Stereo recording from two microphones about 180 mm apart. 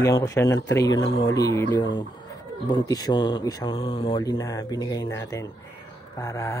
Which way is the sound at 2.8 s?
20° left (ahead or behind).